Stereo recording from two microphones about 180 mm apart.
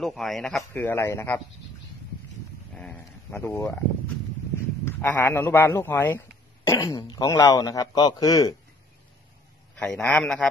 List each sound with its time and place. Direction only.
0.0 s speech: centre (ahead or behind)
2.7 s speech: 5° left (ahead or behind)
4.8 s speech: 15° left (ahead or behind)
9.8 s a man's voice: 5° left (ahead or behind)